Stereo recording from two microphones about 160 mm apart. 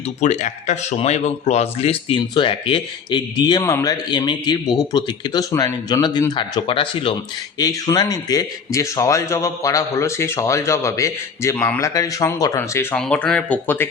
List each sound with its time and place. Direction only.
0.2 s a man's voice: 45° left (ahead or behind)
7.6 s a man's voice: 20° left (ahead or behind)